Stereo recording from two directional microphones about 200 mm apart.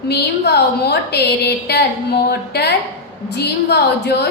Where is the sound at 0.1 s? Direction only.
55° left (ahead or behind).